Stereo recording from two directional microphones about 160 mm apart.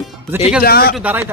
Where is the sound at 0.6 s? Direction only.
70° left (ahead or behind).